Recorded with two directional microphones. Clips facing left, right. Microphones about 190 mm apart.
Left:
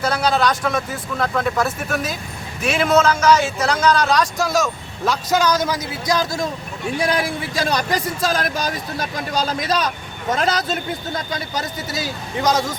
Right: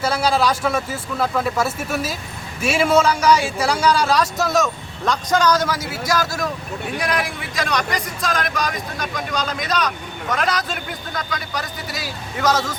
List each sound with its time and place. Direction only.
0.0 s a man's voice: 5° right (ahead or behind); by 11.9 s 25° left (ahead or behind)
12.4 s speech: 15° left (ahead or behind)